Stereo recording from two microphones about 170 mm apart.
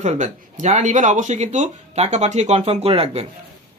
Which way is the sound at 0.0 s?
45° right (ahead or behind).